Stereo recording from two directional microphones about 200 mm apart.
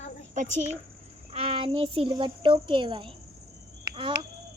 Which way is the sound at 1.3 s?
30° right (ahead or behind).